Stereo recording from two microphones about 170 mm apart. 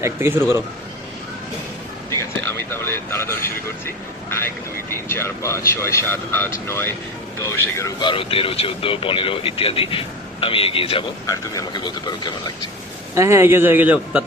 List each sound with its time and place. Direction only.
0.0 s a man's voice: 15° right (ahead or behind)
2.0 s a sound: 15° left (ahead or behind)
4.3 s a man's voice: 15° left (ahead or behind)
13.1 s a man's voice: 15° right (ahead or behind)